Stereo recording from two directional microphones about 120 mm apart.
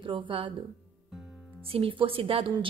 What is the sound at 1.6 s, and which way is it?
Speech, 50° right (ahead or behind).